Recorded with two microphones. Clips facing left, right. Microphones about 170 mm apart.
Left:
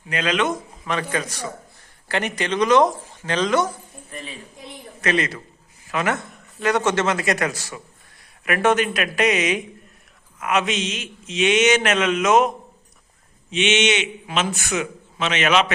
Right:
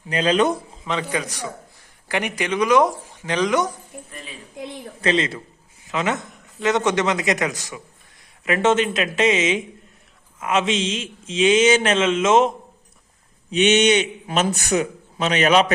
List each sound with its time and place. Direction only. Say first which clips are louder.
0.1 s a man's voice: right 4 dB; 35° right (ahead or behind)
0.9 s speech: even; 20° right (ahead or behind)
4.9 s a man's voice: right 1 dB; 25° right (ahead or behind)
13.5 s a man's voice: right 4 dB; 40° right (ahead or behind)